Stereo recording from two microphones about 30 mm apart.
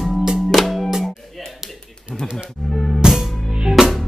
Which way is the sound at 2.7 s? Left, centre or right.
Centre.